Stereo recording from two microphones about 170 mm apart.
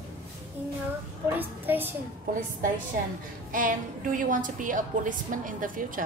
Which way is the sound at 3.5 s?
50° right (ahead or behind).